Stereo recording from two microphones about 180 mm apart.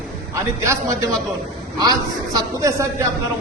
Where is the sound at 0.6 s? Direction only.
15° right (ahead or behind).